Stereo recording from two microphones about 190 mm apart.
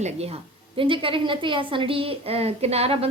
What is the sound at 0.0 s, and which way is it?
A woman's voice, 35° right (ahead or behind).